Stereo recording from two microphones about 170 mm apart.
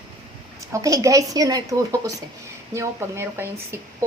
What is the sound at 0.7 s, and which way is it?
A woman's voice, 20° right (ahead or behind).